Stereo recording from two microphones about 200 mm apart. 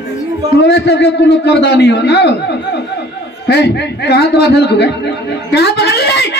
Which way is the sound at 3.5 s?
55° left (ahead or behind).